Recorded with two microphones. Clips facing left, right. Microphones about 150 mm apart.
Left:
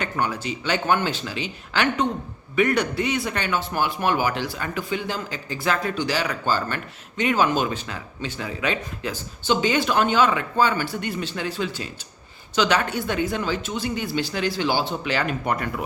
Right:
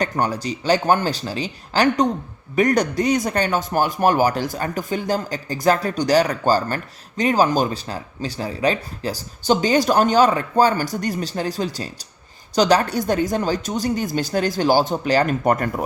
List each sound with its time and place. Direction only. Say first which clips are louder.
0.0 s speech: right 4 dB; 40° right (ahead or behind)